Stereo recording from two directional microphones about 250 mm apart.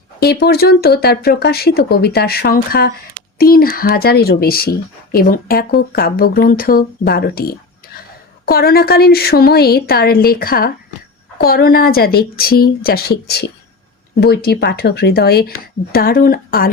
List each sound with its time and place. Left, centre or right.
0.2 s speech: left